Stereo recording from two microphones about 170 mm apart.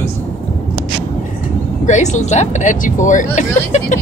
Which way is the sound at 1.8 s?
45° left (ahead or behind).